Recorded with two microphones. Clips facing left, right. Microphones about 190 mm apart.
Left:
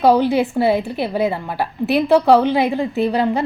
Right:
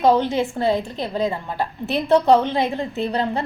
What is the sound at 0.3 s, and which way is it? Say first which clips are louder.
A woman's voice: left 4 dB; 10° left (ahead or behind).